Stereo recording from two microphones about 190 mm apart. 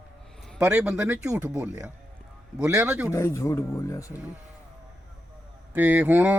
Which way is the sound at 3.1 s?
15° left (ahead or behind).